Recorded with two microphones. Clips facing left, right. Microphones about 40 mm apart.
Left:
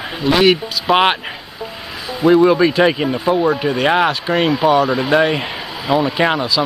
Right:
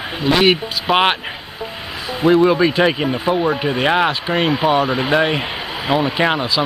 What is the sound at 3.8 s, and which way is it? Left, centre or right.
Speech, centre.